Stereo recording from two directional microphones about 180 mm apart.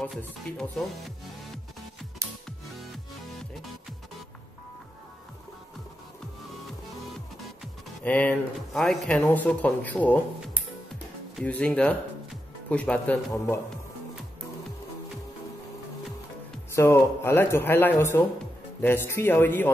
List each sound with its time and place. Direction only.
0.0 s music: 5° left (ahead or behind)
2.2 s music: 15° right (ahead or behind)
7.6 s speech: 10° left (ahead or behind)
10.9 s music: 5° left (ahead or behind)
12.6 s speech: 5° left (ahead or behind)
16.7 s speech: 15° left (ahead or behind)